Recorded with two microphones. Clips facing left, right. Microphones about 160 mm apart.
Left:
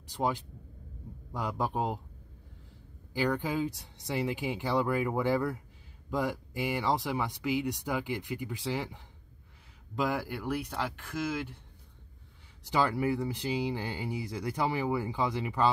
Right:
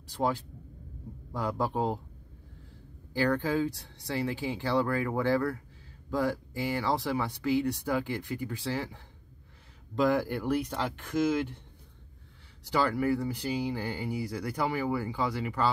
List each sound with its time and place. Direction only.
0.1 s speech: 15° left (ahead or behind)
3.1 s speech: 15° left (ahead or behind)
12.6 s speech: 20° left (ahead or behind)